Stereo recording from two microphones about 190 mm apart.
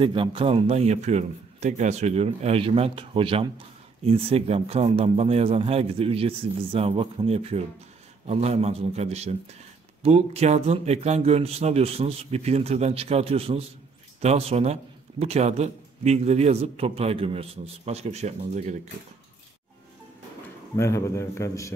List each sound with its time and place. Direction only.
0.0 s a man's voice: 25° right (ahead or behind)
20.7 s a man's voice: 15° left (ahead or behind)